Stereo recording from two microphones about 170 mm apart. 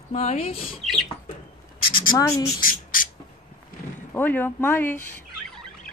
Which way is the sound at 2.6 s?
55° left (ahead or behind).